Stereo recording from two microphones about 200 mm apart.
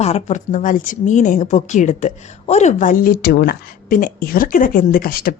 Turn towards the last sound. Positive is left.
turn(degrees=45)  # may be behind; listen again after turning